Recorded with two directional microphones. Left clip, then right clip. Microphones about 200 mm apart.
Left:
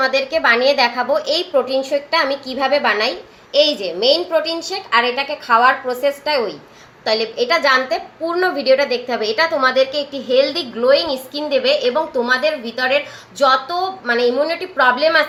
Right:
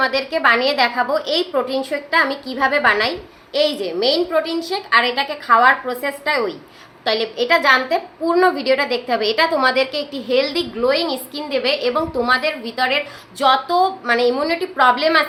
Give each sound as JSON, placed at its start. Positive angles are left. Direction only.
{"t": 0.0, "sound": "a woman's voice", "side_deg": -10}